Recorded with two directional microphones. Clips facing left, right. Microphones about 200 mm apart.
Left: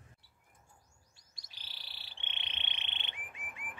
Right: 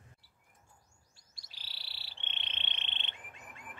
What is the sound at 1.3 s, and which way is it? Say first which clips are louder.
Frog: right 1 dB; 15° left (ahead or behind).